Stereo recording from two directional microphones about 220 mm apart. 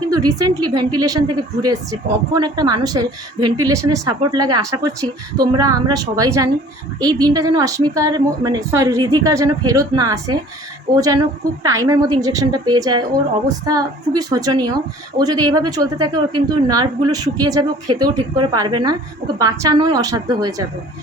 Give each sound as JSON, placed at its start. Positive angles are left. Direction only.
{"t": 0.2, "sound": "a woman's voice", "side_deg": -15}